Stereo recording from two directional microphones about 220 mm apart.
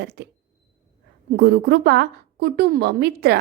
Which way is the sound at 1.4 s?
50° right (ahead or behind).